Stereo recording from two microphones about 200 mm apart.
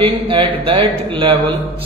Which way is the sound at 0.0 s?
25° right (ahead or behind).